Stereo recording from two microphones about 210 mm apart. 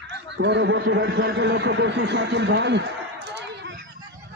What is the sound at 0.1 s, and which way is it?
A man's voice, 55° right (ahead or behind).